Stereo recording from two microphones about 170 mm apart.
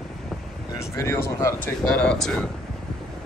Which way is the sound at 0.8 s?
15° left (ahead or behind).